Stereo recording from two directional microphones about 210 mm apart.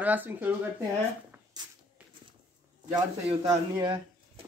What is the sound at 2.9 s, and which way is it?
Speech, 20° right (ahead or behind).